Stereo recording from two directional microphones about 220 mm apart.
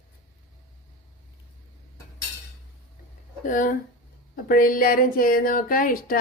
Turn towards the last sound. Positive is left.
turn(degrees=40)  # may be behind; listen again after turning